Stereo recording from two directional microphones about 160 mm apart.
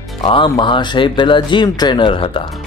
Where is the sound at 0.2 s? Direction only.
30° left (ahead or behind).